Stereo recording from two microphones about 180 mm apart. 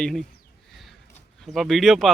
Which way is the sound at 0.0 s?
Centre (ahead or behind).